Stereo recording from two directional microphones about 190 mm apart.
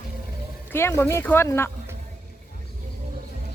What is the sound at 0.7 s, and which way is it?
Speech, 15° left (ahead or behind).